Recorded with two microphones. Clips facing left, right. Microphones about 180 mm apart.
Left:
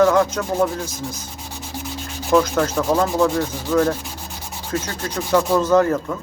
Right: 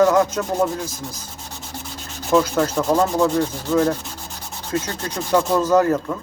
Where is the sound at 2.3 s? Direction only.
Centre (ahead or behind).